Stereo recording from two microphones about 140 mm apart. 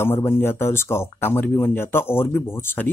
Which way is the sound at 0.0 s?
15° left (ahead or behind).